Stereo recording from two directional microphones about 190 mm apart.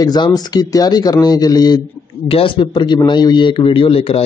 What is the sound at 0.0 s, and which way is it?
A man's voice, 20° left (ahead or behind).